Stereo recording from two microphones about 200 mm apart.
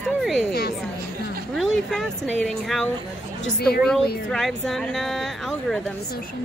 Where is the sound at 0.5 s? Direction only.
50° left (ahead or behind).